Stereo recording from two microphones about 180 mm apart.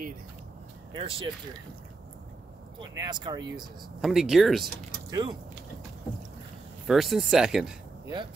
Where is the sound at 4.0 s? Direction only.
Centre (ahead or behind).